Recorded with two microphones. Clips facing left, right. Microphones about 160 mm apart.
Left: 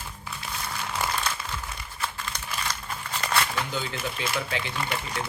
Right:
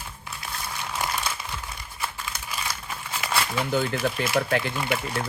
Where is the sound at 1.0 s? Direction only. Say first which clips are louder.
Even; 15° right (ahead or behind).